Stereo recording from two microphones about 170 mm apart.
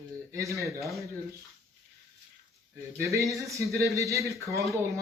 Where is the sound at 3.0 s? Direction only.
20° right (ahead or behind).